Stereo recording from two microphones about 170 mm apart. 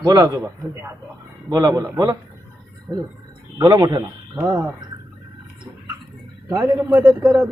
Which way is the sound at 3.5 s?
20° right (ahead or behind).